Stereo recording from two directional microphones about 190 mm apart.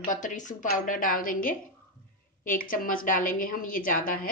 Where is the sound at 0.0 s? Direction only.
45° left (ahead or behind).